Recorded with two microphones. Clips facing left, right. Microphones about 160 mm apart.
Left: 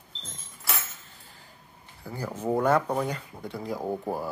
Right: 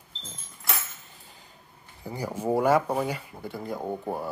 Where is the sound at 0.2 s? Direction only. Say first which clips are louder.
Even; centre (ahead or behind).